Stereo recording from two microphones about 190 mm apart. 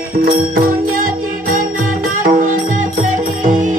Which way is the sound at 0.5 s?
50° right (ahead or behind).